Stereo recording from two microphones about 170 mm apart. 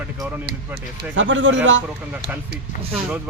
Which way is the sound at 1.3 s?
90° right.